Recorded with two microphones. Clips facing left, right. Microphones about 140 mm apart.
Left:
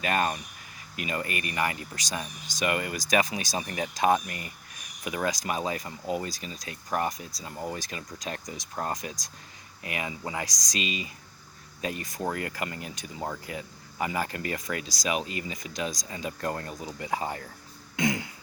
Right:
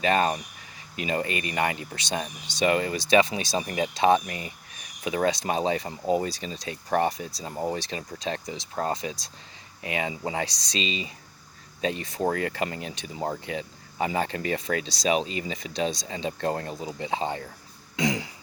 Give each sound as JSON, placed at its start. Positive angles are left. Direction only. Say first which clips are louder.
{"t": 0.0, "sound": "speech", "louder": "right 4 dB", "side_deg": -30}
{"t": 5.0, "sound": "speech", "louder": "right 5 dB", "side_deg": -25}